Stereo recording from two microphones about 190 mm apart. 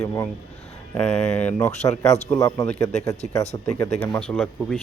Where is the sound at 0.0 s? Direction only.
15° left (ahead or behind).